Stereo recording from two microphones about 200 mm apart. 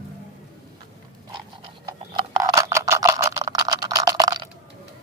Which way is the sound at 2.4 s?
15° right (ahead or behind).